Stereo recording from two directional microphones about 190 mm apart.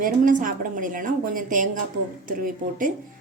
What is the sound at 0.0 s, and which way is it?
A woman's voice, 45° right (ahead or behind).